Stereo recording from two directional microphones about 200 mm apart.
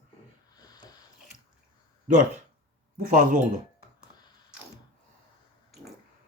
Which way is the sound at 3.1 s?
40° right (ahead or behind).